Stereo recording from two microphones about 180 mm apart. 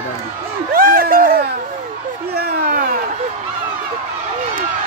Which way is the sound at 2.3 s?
60° right (ahead or behind).